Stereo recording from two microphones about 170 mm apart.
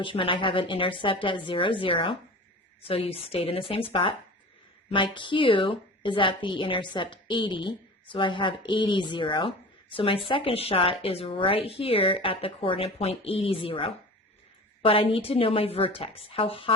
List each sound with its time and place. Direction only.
0.0 s a woman's voice: 30° left (ahead or behind)